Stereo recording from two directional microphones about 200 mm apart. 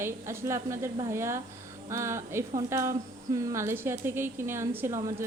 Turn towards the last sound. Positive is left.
turn(degrees=-15)  # may be behind; listen again after turning